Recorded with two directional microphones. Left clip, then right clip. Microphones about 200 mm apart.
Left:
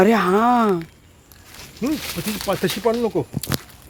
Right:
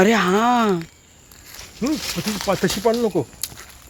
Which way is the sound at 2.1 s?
20° right (ahead or behind).